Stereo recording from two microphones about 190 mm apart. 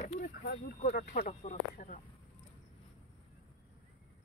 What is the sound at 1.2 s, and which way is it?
Speech, 35° left (ahead or behind).